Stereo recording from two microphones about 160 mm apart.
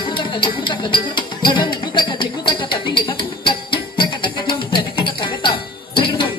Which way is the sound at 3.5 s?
30° left (ahead or behind).